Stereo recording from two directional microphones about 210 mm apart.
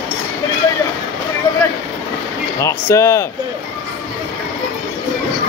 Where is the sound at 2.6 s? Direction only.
15° left (ahead or behind).